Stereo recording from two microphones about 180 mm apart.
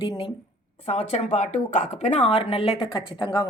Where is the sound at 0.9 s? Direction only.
40° left (ahead or behind).